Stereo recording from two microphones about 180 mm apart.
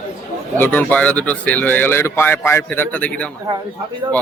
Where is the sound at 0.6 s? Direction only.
10° left (ahead or behind).